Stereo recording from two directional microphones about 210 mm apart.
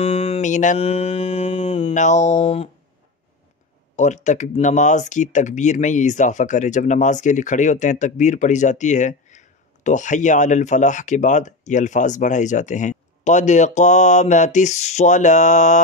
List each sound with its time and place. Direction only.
0.0 s mantra: 25° left (ahead or behind)
3.9 s speech: 35° left (ahead or behind)